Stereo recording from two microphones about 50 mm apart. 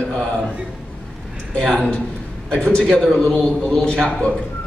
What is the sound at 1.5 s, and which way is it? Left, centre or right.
A man's voice, centre.